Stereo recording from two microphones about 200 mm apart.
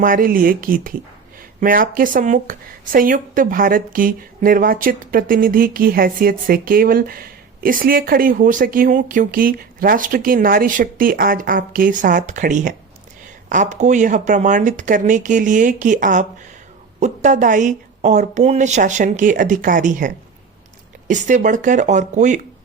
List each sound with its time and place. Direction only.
0.0 s a woman's voice: 45° right (ahead or behind)